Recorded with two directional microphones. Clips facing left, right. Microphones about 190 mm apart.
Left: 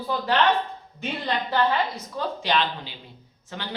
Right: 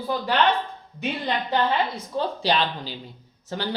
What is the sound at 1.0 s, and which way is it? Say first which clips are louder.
Speech: right 1 dB; 15° right (ahead or behind).